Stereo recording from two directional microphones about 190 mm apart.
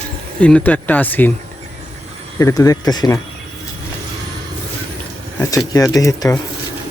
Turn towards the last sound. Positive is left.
turn(degrees=15)  # may be behind; listen again after turning